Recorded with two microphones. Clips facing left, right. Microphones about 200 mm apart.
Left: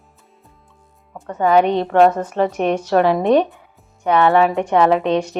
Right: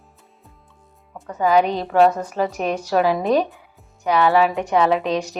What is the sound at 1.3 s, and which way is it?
A woman's voice, 30° left (ahead or behind).